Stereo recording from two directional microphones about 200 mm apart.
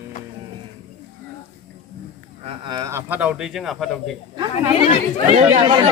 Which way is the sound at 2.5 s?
20° right (ahead or behind).